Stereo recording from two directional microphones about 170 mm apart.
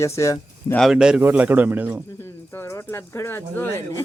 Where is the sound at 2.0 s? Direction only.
15° left (ahead or behind).